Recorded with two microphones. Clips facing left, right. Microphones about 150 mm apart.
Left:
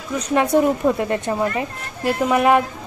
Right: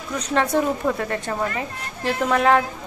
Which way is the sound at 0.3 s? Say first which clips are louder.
Left 4 dB; 15° left (ahead or behind).